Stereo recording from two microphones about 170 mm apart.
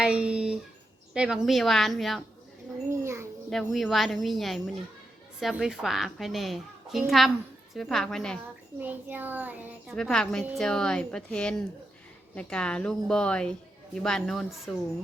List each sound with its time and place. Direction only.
0.0 s a sound: 5° right (ahead or behind)
1.1 s speech: 5° right (ahead or behind)
2.9 s a child's voice: 15° right (ahead or behind)
3.5 s speech: centre (ahead or behind)
8.8 s a child's voice: 10° right (ahead or behind)
9.9 s speech: 5° left (ahead or behind)